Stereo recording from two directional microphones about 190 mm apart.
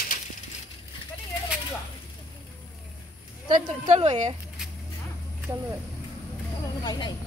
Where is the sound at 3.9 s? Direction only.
35° right (ahead or behind).